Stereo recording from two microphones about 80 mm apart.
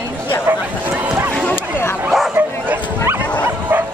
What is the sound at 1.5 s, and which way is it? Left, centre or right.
Dog, left.